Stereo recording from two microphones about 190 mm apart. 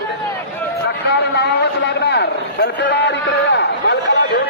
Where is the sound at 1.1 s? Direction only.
60° left (ahead or behind).